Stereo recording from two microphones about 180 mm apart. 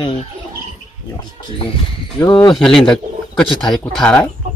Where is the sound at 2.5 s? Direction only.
5° left (ahead or behind).